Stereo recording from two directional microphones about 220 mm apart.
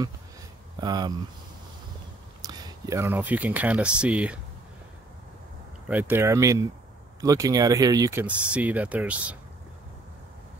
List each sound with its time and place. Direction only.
0.7 s speech: 20° right (ahead or behind)
2.4 s speech: 15° right (ahead or behind)
5.9 s speech: 10° right (ahead or behind)